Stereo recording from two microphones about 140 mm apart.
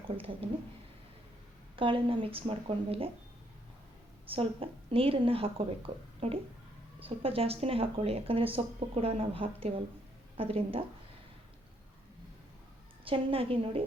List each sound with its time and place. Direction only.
1.7 s speech: 40° right (ahead or behind)
4.3 s speech: 40° right (ahead or behind)
13.1 s speech: 40° right (ahead or behind)